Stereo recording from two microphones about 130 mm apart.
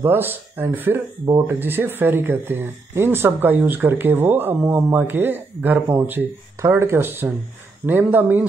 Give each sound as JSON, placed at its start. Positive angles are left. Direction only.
{"t": 0.0, "sound": "speech", "side_deg": -15}